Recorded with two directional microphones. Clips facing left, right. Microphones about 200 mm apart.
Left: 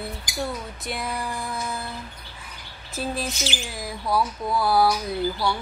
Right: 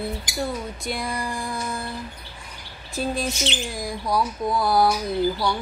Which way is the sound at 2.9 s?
5° left (ahead or behind).